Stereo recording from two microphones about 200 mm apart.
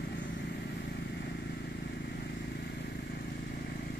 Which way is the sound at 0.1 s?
60° left (ahead or behind).